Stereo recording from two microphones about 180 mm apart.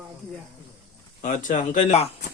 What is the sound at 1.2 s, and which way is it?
Speech, 45° left (ahead or behind).